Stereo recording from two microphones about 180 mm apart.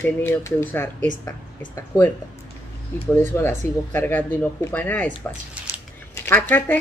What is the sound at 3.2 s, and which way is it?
Speech, 10° left (ahead or behind).